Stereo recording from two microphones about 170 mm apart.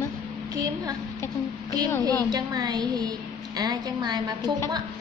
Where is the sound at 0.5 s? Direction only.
20° right (ahead or behind).